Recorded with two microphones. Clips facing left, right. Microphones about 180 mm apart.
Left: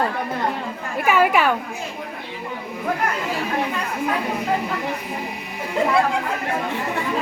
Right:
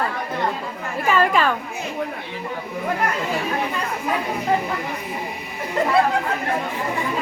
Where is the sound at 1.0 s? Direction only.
10° left (ahead or behind).